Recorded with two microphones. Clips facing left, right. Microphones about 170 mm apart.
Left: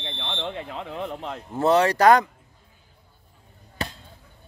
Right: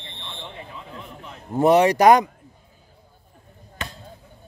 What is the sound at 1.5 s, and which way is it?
Speech, 15° right (ahead or behind).